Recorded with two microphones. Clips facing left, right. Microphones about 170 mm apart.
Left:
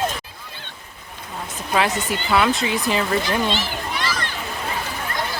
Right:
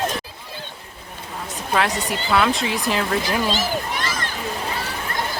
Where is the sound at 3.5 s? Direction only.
45° right (ahead or behind).